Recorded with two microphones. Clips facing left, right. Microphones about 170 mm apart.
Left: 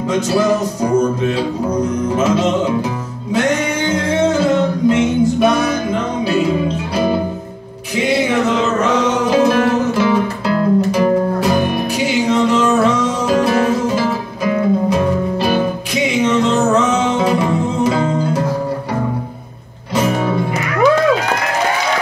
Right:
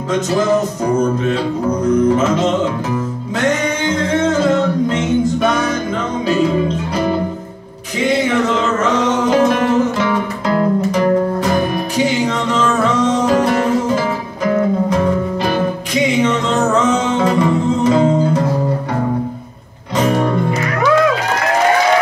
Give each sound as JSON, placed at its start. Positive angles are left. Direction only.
{"t": 5.4, "sound": "music", "side_deg": 10}
{"t": 9.9, "sound": "music", "side_deg": 10}
{"t": 17.2, "sound": "music", "side_deg": 10}